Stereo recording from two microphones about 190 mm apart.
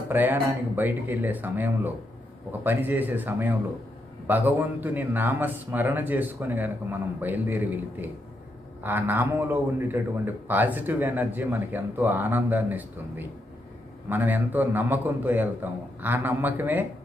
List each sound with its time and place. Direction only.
0.1 s a man's voice: 10° right (ahead or behind)